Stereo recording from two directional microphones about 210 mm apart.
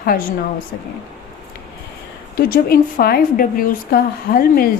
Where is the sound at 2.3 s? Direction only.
45° left (ahead or behind).